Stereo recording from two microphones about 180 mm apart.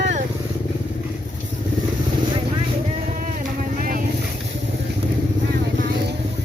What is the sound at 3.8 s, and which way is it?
Vehicle, 50° right (ahead or behind).